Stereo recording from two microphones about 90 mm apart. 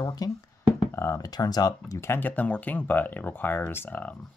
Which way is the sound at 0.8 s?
30° left (ahead or behind).